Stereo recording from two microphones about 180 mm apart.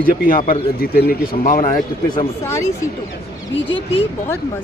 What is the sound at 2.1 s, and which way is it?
Speech, 15° left (ahead or behind).